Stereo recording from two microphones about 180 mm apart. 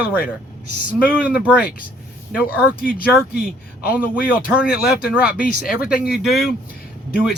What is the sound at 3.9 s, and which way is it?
Speech, 5° right (ahead or behind).